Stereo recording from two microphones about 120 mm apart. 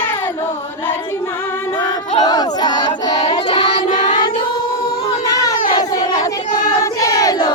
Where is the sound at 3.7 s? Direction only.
90° left.